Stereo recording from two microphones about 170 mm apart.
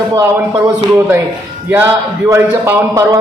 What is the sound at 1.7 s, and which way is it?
Speech, 15° right (ahead or behind).